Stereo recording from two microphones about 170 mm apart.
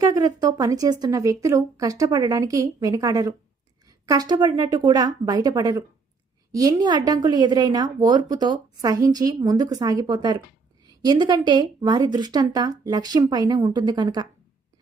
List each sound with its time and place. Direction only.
0.0 s a woman's voice: 20° right (ahead or behind)